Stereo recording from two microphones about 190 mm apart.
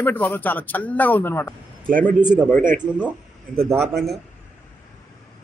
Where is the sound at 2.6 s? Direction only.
40° right (ahead or behind).